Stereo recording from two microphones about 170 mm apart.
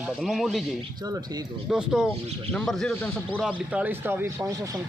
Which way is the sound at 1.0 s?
20° right (ahead or behind).